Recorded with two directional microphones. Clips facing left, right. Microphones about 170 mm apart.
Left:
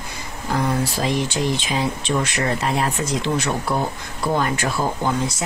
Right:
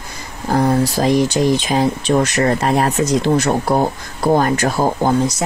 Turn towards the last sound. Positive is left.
turn(degrees=-40)  # may be behind; listen again after turning